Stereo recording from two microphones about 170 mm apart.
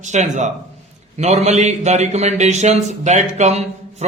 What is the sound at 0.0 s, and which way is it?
A man's voice, 45° right (ahead or behind).